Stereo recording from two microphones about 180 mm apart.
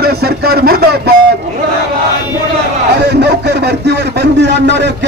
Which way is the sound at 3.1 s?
70° right (ahead or behind).